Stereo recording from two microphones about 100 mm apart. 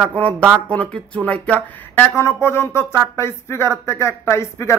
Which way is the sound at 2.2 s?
25° left (ahead or behind).